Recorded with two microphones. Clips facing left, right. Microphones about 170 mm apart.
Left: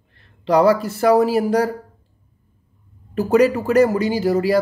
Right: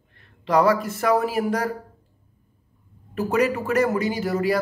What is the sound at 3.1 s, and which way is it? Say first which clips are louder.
Speech: left 6 dB; 35° left (ahead or behind).